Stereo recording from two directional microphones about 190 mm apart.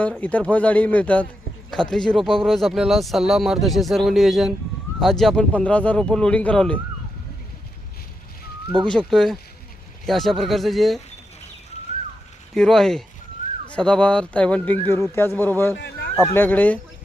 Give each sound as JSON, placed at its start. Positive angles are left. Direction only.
{"t": 0.2, "sound": "a man's voice", "side_deg": 10}
{"t": 8.9, "sound": "speech", "side_deg": 5}
{"t": 12.5, "sound": "speech", "side_deg": 0}
{"t": 13.4, "sound": "a sound", "side_deg": 45}
{"t": 13.7, "sound": "a man's voice", "side_deg": 5}